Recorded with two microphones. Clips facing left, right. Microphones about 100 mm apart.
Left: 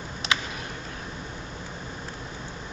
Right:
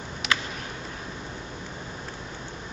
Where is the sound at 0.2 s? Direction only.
30° left (ahead or behind).